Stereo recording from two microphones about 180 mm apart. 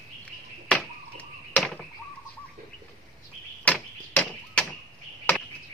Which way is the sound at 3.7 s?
5° left (ahead or behind).